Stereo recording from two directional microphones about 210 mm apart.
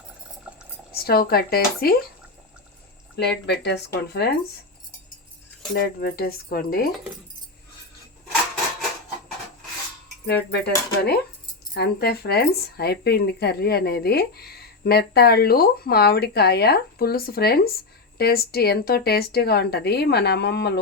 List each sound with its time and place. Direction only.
0.5 s boiling: 5° right (ahead or behind)
1.0 s speech: 45° left (ahead or behind)
3.2 s speech: 50° left (ahead or behind)
5.7 s speech: 45° left (ahead or behind)
10.5 s speech: 50° left (ahead or behind)